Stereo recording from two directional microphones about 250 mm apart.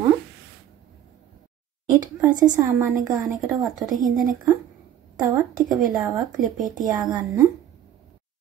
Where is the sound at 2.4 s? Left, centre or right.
Centre.